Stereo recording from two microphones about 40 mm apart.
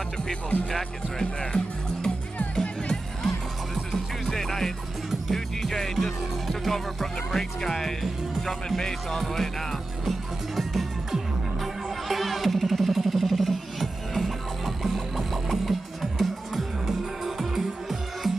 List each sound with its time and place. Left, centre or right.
1.4 s speech: left
2.5 s music: centre